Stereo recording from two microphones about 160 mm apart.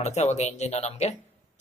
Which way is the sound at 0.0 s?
45° left (ahead or behind).